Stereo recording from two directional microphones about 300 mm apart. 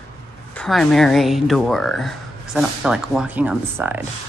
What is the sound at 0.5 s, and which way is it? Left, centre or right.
Speech, centre.